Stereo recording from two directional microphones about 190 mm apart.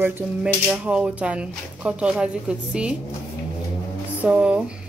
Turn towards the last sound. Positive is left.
turn(degrees=-5)  # may be behind; listen again after turning